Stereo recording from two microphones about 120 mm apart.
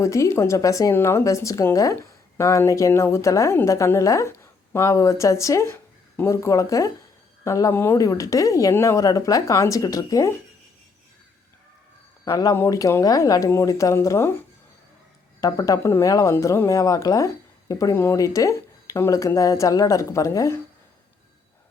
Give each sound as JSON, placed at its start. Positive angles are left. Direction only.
{"t": 0.0, "sound": "speech", "side_deg": 25}
{"t": 12.2, "sound": "speech", "side_deg": 30}
{"t": 15.4, "sound": "speech", "side_deg": 30}